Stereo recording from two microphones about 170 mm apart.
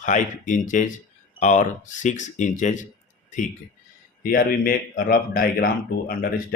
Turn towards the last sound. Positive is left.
turn(degrees=60)  # may be behind; listen again after turning